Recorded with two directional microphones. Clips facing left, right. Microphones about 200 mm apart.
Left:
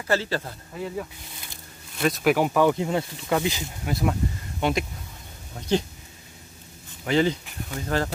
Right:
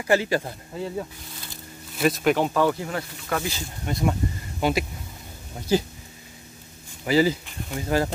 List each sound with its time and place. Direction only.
0.0 s speech: 15° right (ahead or behind)
2.0 s speech: centre (ahead or behind); by 3.6 s 20° left (ahead or behind)
3.8 s speech: centre (ahead or behind)
7.1 s speech: 5° right (ahead or behind)